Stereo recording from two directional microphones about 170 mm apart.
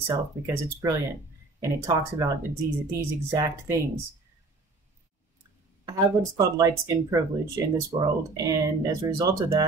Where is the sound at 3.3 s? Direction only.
20° right (ahead or behind).